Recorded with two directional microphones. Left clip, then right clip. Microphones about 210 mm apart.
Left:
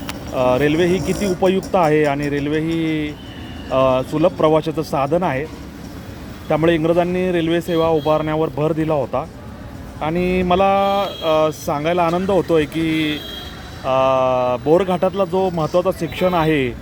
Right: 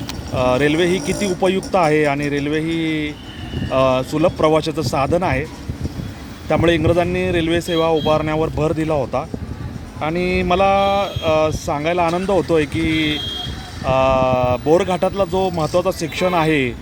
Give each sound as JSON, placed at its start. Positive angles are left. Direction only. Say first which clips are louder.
{"t": 0.3, "sound": "speech", "louder": "even", "side_deg": -10}
{"t": 6.5, "sound": "speech", "louder": "even", "side_deg": -10}